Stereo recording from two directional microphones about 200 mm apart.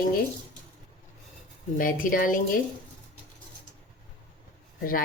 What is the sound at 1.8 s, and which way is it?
Speech, 45° left (ahead or behind).